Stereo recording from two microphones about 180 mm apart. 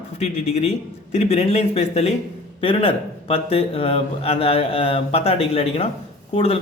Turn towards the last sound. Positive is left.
turn(degrees=30)  # may be behind; listen again after turning